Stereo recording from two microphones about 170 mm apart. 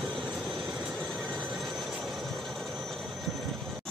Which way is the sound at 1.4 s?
5° right (ahead or behind).